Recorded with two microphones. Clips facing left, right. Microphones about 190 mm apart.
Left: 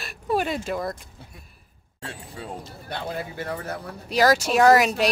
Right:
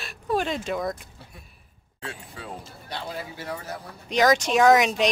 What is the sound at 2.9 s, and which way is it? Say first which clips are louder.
Speech: left 3 dB; 55° left (ahead or behind).